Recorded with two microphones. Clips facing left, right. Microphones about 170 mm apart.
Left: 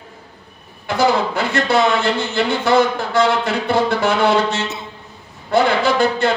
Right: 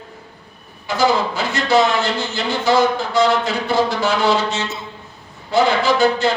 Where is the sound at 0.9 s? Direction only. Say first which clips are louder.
Left 1 dB; 60° left (ahead or behind).